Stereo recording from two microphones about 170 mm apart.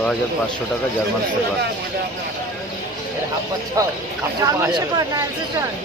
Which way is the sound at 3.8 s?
20° right (ahead or behind).